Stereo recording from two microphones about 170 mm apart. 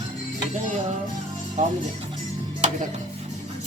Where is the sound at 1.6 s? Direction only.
45° right (ahead or behind).